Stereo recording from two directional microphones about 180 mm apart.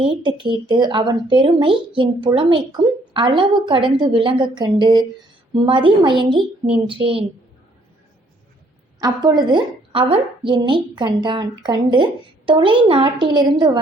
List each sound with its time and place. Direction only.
0.0 s a woman's voice: 30° right (ahead or behind)
9.0 s speech: 20° right (ahead or behind)